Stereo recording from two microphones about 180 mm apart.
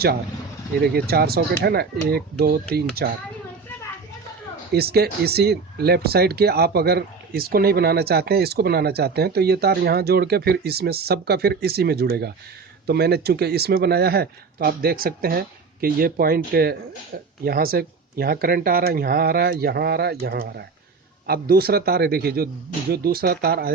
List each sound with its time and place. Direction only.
0.9 s speech: 60° right (ahead or behind)
4.7 s speech: 60° right (ahead or behind)